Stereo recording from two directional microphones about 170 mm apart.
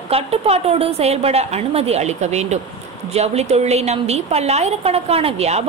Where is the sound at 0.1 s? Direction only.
35° right (ahead or behind).